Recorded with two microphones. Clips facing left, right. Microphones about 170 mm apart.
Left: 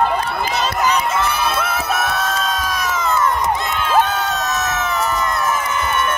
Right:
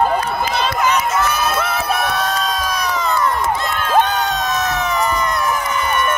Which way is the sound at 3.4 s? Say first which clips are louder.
Even; 20° left (ahead or behind).